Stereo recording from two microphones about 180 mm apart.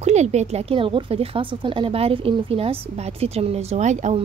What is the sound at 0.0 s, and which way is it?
A woman's voice, 40° right (ahead or behind).